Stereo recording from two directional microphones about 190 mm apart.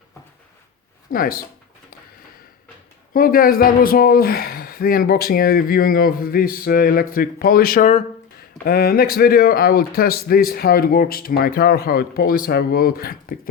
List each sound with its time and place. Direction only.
1.1 s speech: 50° left (ahead or behind)
3.1 s speech: 50° left (ahead or behind)
8.6 s speech: 50° left (ahead or behind)